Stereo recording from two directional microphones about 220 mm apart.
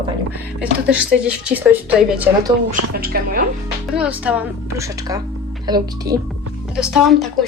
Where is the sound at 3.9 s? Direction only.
5° right (ahead or behind).